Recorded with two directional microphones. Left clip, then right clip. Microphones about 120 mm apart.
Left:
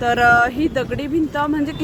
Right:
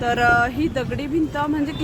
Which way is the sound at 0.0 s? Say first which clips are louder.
Left 4 dB; 40° left (ahead or behind).